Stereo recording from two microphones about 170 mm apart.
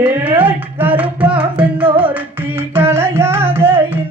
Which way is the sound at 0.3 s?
10° right (ahead or behind).